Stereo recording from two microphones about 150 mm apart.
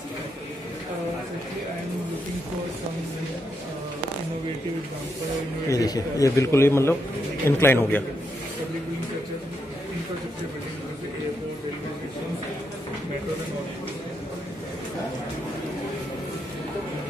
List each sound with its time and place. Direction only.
5.7 s a man's voice: 25° left (ahead or behind)